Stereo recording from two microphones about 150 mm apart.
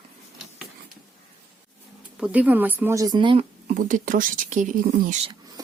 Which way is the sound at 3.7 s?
60° right (ahead or behind).